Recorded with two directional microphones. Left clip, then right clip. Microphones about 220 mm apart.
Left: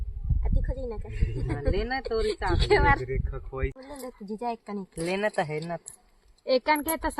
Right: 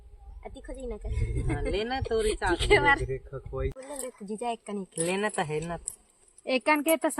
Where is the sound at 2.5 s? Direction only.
15° right (ahead or behind).